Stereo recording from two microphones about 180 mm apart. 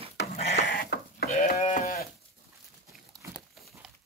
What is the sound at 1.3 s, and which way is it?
Sheep, 40° left (ahead or behind).